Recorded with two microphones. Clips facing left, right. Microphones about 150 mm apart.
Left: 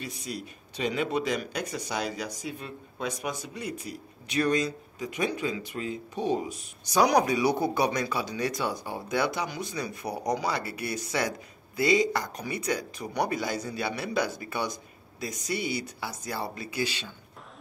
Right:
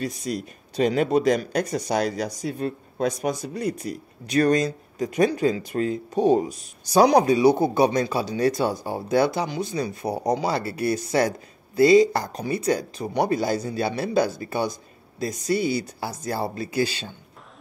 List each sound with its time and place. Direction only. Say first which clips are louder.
0.0 s speech: right 8 dB; 40° right (ahead or behind)